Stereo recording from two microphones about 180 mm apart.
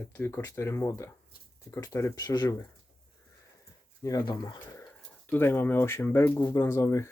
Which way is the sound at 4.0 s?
20° left (ahead or behind).